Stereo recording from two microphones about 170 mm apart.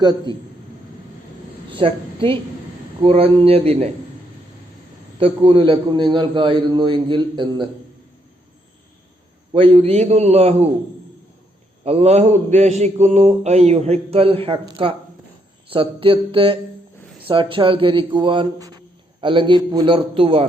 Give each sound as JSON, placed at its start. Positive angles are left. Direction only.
{"t": 0.0, "sound": "a man's voice", "side_deg": -25}
{"t": 1.7, "sound": "a woman's voice", "side_deg": -30}
{"t": 3.0, "sound": "mantra", "side_deg": -35}
{"t": 5.2, "sound": "a man's voice", "side_deg": -30}
{"t": 9.5, "sound": "mantra", "side_deg": -30}
{"t": 11.9, "sound": "mantra", "side_deg": -40}
{"t": 17.2, "sound": "a man's voice", "side_deg": -30}